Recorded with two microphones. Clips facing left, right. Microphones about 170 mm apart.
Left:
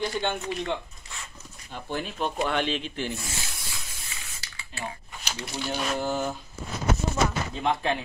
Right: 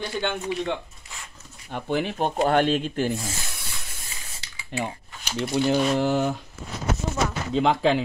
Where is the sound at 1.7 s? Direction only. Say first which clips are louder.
Right 7 dB; 70° right (ahead or behind).